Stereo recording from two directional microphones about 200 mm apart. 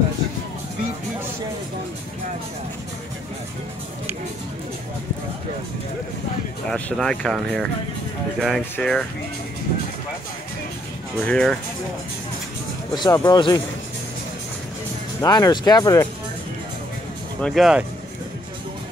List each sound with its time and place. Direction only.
6.7 s speech: 5° left (ahead or behind)
11.2 s speech: 5° left (ahead or behind)
12.9 s speech: 20° left (ahead or behind)
15.2 s speech: 20° left (ahead or behind)
17.4 s speech: centre (ahead or behind)